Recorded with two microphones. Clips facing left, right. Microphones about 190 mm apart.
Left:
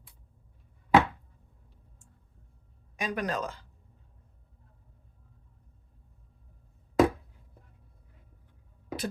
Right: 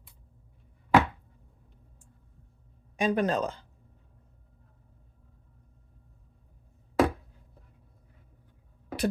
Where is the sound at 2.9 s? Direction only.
30° right (ahead or behind).